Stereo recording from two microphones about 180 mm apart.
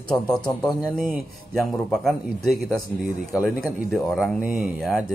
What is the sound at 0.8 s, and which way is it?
Speech, 10° right (ahead or behind).